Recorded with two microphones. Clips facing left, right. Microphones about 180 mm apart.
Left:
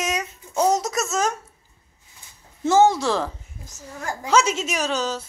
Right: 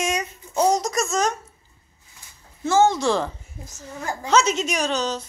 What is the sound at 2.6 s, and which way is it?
Speech, 20° left (ahead or behind).